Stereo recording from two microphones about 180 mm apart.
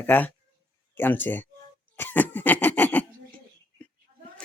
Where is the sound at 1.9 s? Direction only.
10° left (ahead or behind).